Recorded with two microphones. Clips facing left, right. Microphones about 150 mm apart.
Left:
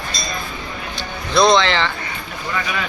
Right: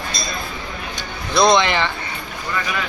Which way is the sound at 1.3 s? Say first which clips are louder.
Left 1 dB; 15° right (ahead or behind).